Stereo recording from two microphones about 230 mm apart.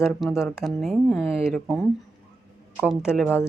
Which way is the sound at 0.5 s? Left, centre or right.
Centre.